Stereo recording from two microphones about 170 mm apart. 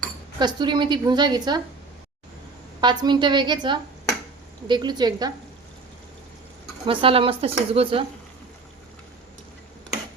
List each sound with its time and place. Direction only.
0.3 s a woman's voice: 25° right (ahead or behind)
2.8 s a woman's voice: 25° right (ahead or behind)
6.8 s speech: 30° right (ahead or behind)